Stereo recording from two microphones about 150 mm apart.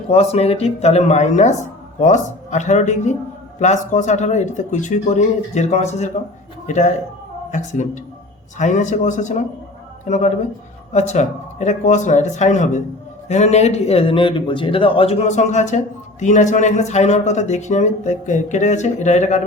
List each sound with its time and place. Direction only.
0.1 s speech: 45° left (ahead or behind)